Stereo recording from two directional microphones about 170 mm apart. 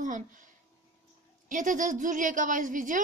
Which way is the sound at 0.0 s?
50° right (ahead or behind).